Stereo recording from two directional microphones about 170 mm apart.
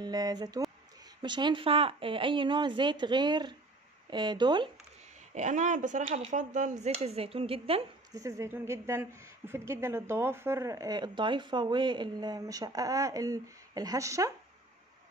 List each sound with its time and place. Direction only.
0.0 s speech: 25° right (ahead or behind)
5.3 s speech: 45° right (ahead or behind)
8.1 s speech: 20° right (ahead or behind)